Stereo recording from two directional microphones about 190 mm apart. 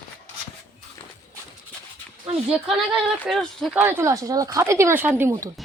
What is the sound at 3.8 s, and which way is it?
Speech, 15° right (ahead or behind).